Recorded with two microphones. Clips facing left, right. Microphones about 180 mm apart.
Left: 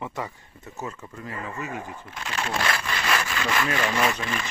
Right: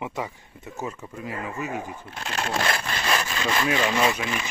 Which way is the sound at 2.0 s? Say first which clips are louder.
Right 1 dB; 35° right (ahead or behind).